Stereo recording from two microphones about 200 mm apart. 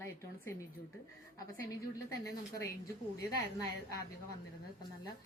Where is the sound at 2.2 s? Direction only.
15° left (ahead or behind).